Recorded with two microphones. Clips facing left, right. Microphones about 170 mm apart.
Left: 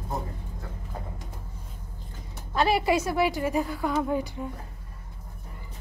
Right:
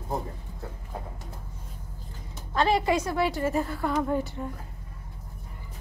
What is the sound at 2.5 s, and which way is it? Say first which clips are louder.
A woman's voice: even; 10° left (ahead or behind).